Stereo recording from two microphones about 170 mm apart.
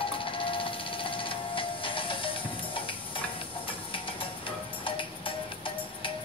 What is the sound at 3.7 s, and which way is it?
Music, 30° left (ahead or behind).